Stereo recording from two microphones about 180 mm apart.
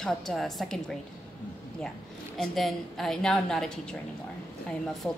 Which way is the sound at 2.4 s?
Centre (ahead or behind).